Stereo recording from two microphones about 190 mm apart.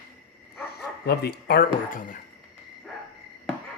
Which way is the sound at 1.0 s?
55° left (ahead or behind).